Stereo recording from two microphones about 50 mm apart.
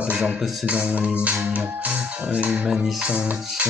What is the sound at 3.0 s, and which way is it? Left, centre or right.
Speech, centre.